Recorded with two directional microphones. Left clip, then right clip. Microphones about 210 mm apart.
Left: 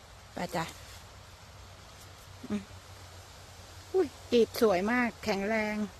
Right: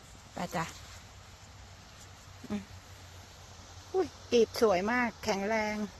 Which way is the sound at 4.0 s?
15° left (ahead or behind).